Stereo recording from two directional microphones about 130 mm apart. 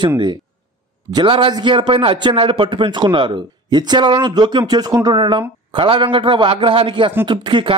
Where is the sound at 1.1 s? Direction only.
40° right (ahead or behind).